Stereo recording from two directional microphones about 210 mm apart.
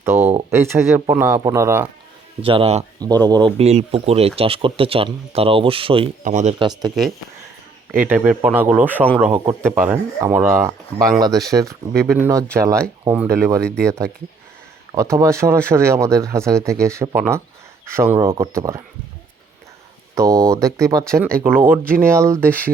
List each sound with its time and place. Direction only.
0.0 s speech: 10° right (ahead or behind)
2.4 s speech: 25° right (ahead or behind)
3.0 s speech: 20° right (ahead or behind)
3.6 s speech: 30° right (ahead or behind)
7.9 s speech: 5° right (ahead or behind)
13.6 s speech: 5° left (ahead or behind)
15.1 s speech: 15° right (ahead or behind)
20.1 s speech: 15° right (ahead or behind)